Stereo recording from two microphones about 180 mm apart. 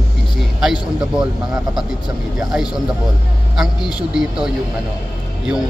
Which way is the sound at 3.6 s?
5° right (ahead or behind).